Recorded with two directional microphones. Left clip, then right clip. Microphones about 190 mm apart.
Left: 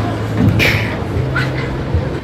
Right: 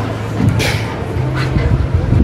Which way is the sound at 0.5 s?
10° right (ahead or behind).